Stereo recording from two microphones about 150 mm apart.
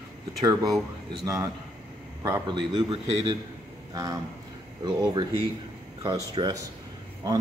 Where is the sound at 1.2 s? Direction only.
25° right (ahead or behind).